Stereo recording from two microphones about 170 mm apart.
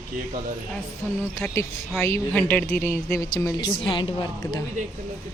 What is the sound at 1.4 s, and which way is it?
Speech, 10° left (ahead or behind).